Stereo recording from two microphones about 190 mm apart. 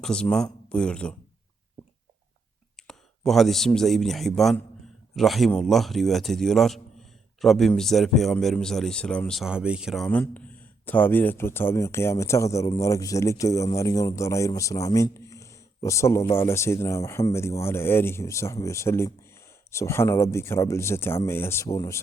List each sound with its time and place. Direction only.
0.0 s a man's voice: 5° left (ahead or behind)
2.8 s a man's voice: centre (ahead or behind)
15.3 s a sound: 15° left (ahead or behind)
16.3 s speech: 15° left (ahead or behind)